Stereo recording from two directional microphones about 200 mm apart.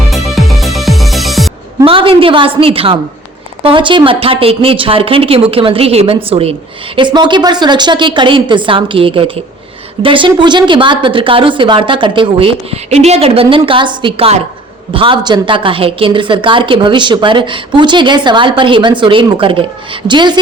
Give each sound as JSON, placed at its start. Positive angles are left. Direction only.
{"t": 0.1, "sound": "music", "side_deg": 0}
{"t": 1.8, "sound": "a woman's voice", "side_deg": -25}